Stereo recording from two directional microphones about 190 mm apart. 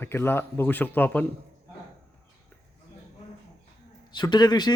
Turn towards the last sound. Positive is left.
turn(degrees=20)  # may be behind; listen again after turning